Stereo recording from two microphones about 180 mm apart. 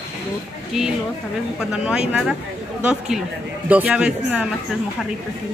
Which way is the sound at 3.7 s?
10° right (ahead or behind).